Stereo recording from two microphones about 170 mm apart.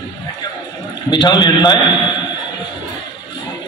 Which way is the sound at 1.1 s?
25° left (ahead or behind).